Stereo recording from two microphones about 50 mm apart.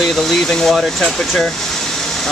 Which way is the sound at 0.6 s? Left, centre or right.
Centre.